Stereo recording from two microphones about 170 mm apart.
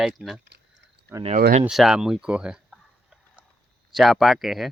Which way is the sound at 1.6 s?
Centre (ahead or behind).